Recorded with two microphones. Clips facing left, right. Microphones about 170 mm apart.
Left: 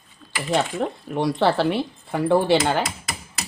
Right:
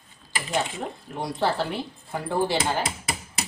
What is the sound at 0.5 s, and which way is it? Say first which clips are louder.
Speech: left 6 dB; 75° left (ahead or behind).